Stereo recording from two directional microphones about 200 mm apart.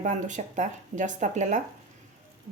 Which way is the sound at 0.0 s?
40° right (ahead or behind).